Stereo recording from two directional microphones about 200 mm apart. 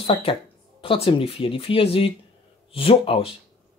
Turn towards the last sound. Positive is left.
turn(degrees=25)  # may be behind; listen again after turning